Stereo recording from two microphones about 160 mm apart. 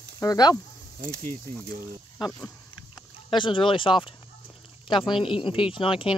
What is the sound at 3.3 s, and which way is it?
Speech, 30° left (ahead or behind).